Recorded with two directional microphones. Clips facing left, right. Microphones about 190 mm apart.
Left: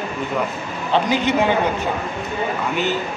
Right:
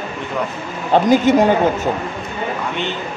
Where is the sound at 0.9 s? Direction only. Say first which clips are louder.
Right 6 dB; 45° right (ahead or behind).